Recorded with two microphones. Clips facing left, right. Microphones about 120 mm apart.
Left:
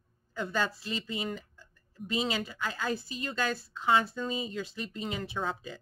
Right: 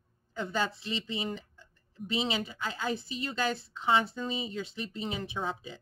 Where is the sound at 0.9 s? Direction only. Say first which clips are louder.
Even; 45° left (ahead or behind).